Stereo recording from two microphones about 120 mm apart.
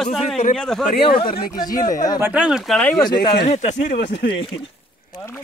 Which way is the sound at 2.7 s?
10° left (ahead or behind).